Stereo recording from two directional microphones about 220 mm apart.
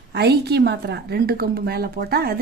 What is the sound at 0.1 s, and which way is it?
A woman's voice, 50° right (ahead or behind).